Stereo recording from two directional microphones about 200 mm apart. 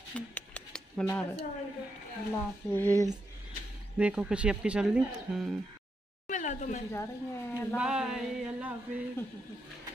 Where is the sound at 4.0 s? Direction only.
5° right (ahead or behind).